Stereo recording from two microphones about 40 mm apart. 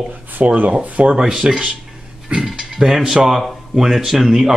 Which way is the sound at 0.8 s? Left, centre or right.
Right.